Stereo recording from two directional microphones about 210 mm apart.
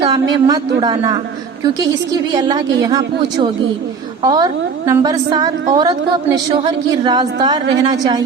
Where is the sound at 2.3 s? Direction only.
20° right (ahead or behind).